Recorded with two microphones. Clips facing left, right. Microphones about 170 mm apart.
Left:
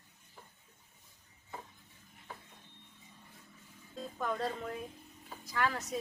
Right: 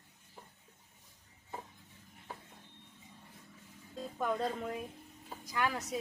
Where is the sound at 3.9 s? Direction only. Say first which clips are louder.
Right 2 dB; 10° right (ahead or behind).